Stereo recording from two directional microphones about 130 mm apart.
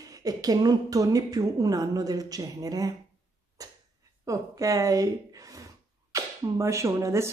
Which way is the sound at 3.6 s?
25° right (ahead or behind).